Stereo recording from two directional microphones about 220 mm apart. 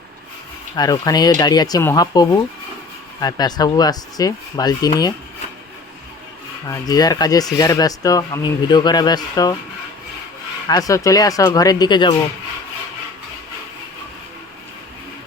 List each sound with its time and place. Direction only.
0.8 s speech: 15° left (ahead or behind)
6.7 s speech: 15° left (ahead or behind)
10.7 s speech: 15° left (ahead or behind)